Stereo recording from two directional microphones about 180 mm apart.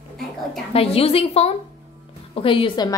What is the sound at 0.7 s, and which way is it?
A woman's voice, 30° left (ahead or behind).